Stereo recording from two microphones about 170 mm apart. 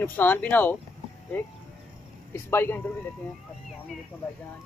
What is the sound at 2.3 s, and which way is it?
Speech, 15° left (ahead or behind).